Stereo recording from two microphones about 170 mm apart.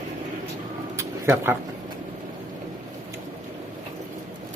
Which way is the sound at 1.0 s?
15° right (ahead or behind).